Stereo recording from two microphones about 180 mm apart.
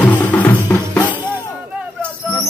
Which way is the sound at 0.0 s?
10° left (ahead or behind).